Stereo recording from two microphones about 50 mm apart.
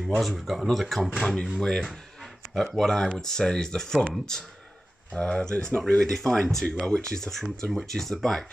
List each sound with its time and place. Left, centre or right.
0.2 s speech: centre